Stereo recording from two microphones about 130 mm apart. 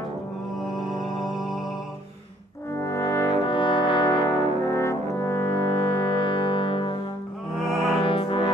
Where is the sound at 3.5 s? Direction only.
40° left (ahead or behind).